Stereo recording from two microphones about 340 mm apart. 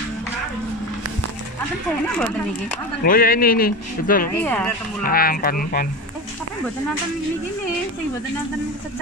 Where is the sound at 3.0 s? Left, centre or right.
Left.